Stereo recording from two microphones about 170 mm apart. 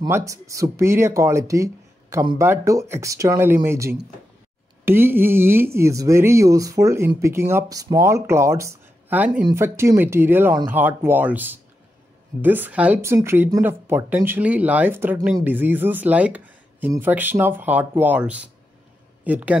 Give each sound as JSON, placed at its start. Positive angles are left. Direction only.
{"t": 0.0, "sound": "speech", "side_deg": -20}